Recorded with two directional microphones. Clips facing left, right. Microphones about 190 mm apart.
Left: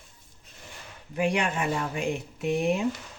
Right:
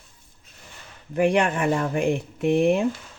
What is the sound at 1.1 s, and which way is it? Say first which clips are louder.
Speech: right 6 dB; 55° right (ahead or behind).